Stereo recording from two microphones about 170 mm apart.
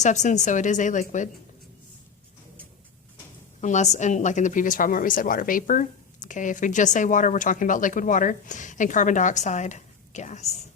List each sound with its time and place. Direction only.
0.0 s a woman's voice: 45° left (ahead or behind)
3.6 s a woman's voice: 45° left (ahead or behind)